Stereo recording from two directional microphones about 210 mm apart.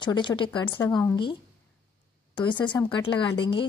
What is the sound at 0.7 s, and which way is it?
Speech, 10° left (ahead or behind).